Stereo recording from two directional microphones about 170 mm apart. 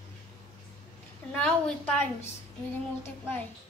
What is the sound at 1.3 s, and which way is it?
Speech, 5° left (ahead or behind).